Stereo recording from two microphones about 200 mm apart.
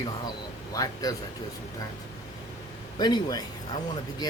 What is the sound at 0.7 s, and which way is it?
Speech, 15° left (ahead or behind).